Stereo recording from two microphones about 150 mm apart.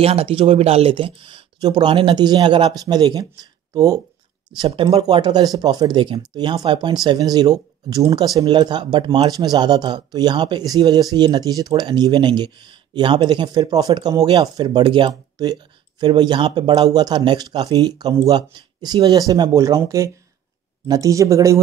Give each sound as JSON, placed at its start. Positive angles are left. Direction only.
{"t": 0.0, "sound": "speech", "side_deg": -40}
{"t": 4.6, "sound": "speech", "side_deg": -35}